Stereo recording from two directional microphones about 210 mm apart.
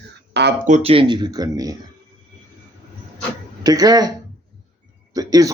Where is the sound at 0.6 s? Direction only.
30° right (ahead or behind).